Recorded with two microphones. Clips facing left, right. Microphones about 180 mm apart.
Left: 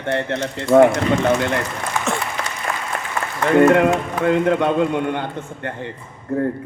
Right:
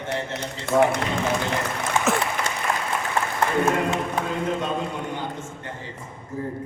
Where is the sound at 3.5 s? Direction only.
70° left (ahead or behind).